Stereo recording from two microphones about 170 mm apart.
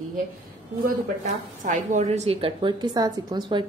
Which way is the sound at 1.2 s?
45° right (ahead or behind).